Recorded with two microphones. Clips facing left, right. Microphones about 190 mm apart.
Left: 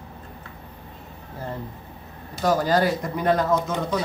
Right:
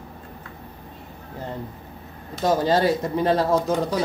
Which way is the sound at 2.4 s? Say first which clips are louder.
Right 1 dB; 25° right (ahead or behind).